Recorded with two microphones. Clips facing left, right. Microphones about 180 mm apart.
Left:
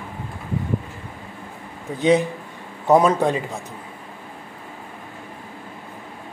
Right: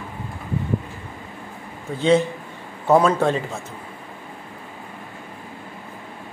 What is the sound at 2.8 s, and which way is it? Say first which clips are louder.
Speech: left 1 dB; 15° left (ahead or behind).